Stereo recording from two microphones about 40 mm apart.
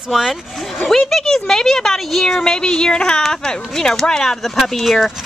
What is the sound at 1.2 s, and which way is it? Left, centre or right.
Speech, centre.